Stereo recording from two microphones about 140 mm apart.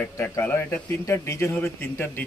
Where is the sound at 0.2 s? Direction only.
15° left (ahead or behind).